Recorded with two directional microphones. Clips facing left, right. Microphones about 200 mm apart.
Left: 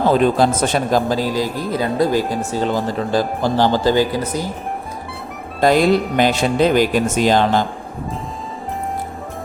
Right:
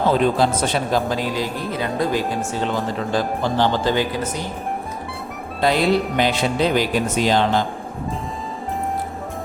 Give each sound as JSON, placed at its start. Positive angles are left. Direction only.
{"t": 0.3, "sound": "speech", "side_deg": 45}
{"t": 5.5, "sound": "speech", "side_deg": 45}